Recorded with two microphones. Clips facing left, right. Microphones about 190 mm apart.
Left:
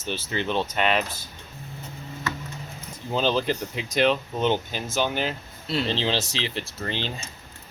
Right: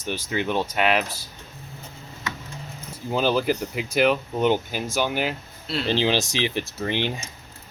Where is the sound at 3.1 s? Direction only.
10° right (ahead or behind).